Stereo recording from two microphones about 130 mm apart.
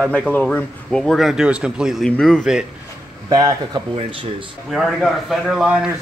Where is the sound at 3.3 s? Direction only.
30° right (ahead or behind).